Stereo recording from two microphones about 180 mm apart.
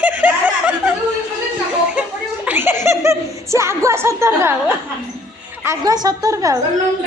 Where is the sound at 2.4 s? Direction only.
10° right (ahead or behind).